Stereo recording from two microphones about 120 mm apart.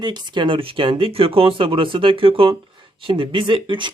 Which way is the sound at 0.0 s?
35° right (ahead or behind).